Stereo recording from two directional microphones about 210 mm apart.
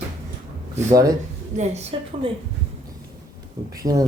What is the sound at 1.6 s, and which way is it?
Speech, 30° right (ahead or behind).